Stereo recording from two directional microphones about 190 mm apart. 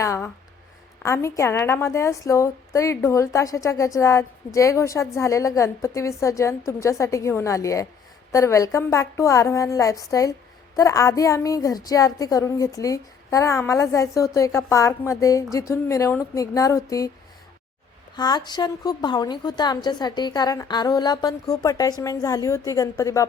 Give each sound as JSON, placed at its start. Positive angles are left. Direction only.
{"t": 0.0, "sound": "a sound", "side_deg": 15}
{"t": 1.0, "sound": "a woman's voice", "side_deg": 15}
{"t": 18.2, "sound": "a woman's voice", "side_deg": 20}